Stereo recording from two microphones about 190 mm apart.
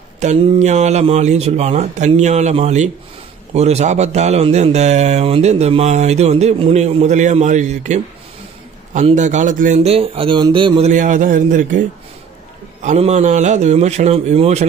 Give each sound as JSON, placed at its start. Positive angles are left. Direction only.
{"t": 0.2, "sound": "speech", "side_deg": -35}
{"t": 10.9, "sound": "speech", "side_deg": -40}
{"t": 12.8, "sound": "speech", "side_deg": -35}